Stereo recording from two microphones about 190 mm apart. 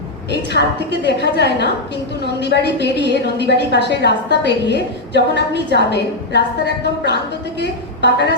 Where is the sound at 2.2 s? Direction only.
60° left (ahead or behind).